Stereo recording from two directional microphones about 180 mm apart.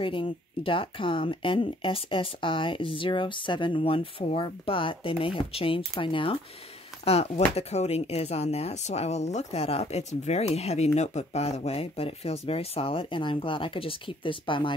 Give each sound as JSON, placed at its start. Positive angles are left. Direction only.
{"t": 0.0, "sound": "speech", "side_deg": 30}